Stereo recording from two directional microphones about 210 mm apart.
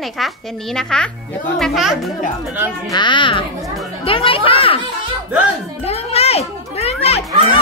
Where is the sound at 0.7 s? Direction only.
5° left (ahead or behind).